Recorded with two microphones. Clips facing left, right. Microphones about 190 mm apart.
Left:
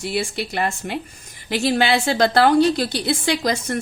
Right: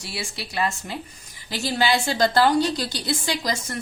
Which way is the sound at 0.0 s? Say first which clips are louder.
Left 9 dB; 55° left (ahead or behind).